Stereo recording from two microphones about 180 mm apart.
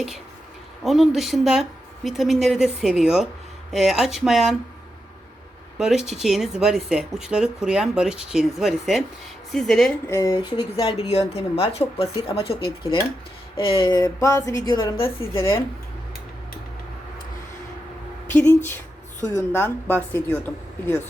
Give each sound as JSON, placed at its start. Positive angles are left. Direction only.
{"t": 0.9, "sound": "speech", "side_deg": 0}
{"t": 5.7, "sound": "speech", "side_deg": -5}
{"t": 10.1, "sound": "a woman's voice", "side_deg": 20}
{"t": 15.0, "sound": "speech", "side_deg": 15}
{"t": 18.3, "sound": "speech", "side_deg": 10}